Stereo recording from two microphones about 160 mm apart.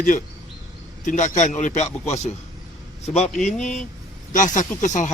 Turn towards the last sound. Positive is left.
turn(degrees=50)  # may be behind; listen again after turning